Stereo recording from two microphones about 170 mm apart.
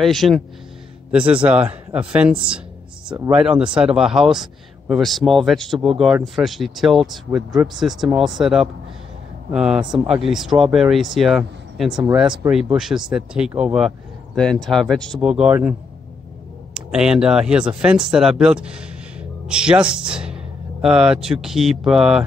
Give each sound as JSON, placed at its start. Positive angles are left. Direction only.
{"t": 0.0, "sound": "speech", "side_deg": 0}
{"t": 7.3, "sound": "speech", "side_deg": -15}
{"t": 7.6, "sound": "speech", "side_deg": 0}
{"t": 16.7, "sound": "speech", "side_deg": -5}